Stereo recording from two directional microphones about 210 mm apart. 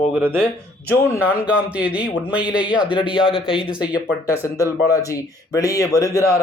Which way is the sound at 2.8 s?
25° left (ahead or behind).